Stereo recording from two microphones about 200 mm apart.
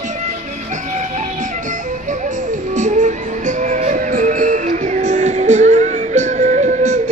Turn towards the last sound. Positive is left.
turn(degrees=-40)  # may be behind; listen again after turning